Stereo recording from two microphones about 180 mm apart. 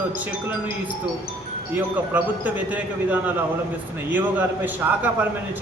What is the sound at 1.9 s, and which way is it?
Speech, 10° right (ahead or behind).